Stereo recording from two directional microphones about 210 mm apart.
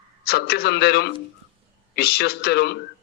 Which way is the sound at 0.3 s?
50° left (ahead or behind).